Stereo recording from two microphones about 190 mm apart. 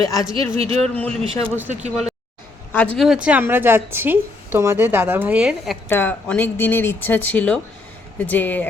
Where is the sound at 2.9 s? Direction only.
Centre (ahead or behind).